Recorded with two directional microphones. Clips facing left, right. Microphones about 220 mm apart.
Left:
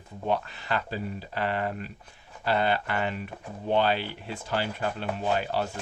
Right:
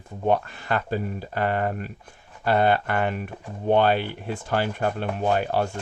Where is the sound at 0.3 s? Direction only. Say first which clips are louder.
Right 5 dB; 50° right (ahead or behind).